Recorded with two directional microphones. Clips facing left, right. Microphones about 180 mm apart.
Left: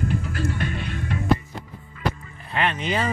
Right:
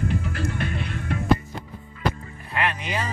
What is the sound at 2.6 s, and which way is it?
Music, 25° left (ahead or behind).